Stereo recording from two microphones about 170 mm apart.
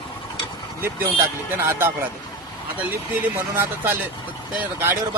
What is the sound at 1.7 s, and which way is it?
Speech, 15° right (ahead or behind).